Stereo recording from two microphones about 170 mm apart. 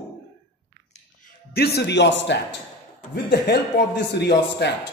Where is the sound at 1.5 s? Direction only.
70° left (ahead or behind).